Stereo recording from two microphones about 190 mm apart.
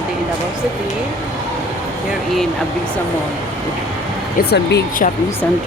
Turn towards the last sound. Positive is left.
turn(degrees=55)  # may be behind; listen again after turning